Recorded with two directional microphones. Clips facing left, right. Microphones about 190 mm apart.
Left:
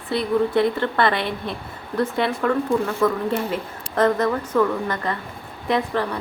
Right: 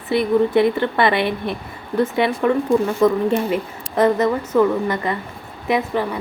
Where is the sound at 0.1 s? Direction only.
15° right (ahead or behind).